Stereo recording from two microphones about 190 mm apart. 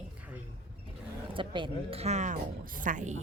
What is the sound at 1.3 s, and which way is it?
A woman's voice, 25° right (ahead or behind).